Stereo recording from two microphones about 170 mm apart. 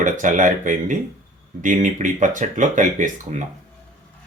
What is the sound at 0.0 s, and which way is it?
Speech, 50° right (ahead or behind).